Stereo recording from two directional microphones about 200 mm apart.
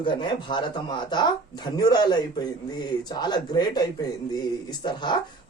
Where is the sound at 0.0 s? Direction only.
25° left (ahead or behind).